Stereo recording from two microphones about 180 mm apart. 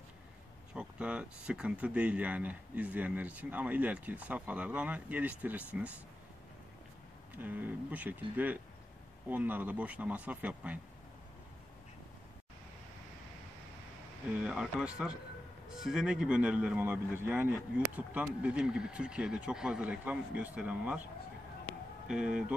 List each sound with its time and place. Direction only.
0.7 s speech: 5° right (ahead or behind)
7.4 s speech: 10° right (ahead or behind)
14.4 s speech: 5° right (ahead or behind)